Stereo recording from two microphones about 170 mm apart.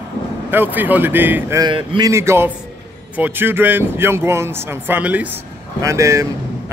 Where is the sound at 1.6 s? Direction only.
25° right (ahead or behind).